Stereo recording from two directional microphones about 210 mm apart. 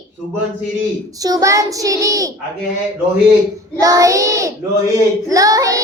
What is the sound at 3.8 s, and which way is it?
Speech, 15° right (ahead or behind).